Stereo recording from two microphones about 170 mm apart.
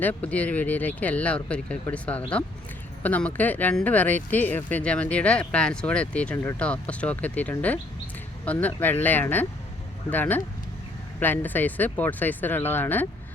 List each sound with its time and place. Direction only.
0.0 s speech: 10° left (ahead or behind)